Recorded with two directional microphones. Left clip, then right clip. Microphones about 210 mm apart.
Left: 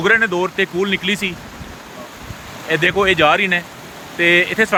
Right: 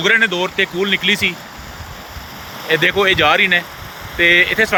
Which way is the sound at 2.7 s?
15° left (ahead or behind).